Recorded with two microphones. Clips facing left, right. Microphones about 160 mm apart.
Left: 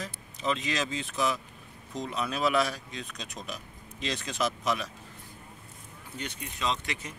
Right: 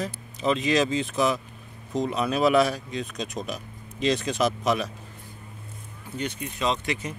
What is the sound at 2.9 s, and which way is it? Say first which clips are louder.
Speech: right 9 dB; 15° right (ahead or behind).